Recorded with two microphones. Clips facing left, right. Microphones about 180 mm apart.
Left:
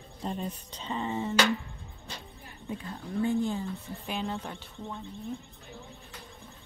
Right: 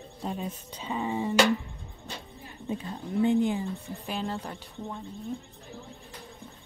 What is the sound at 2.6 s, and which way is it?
Speech, 20° right (ahead or behind).